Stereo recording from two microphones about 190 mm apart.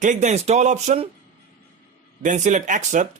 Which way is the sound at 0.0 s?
40° right (ahead or behind).